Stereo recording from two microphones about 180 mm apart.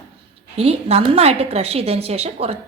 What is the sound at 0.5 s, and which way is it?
A woman's voice, 35° right (ahead or behind).